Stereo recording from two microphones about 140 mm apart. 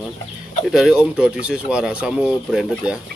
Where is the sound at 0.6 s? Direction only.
5° right (ahead or behind).